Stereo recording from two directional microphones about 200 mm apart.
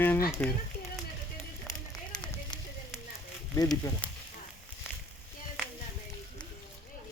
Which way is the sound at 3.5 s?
15° left (ahead or behind).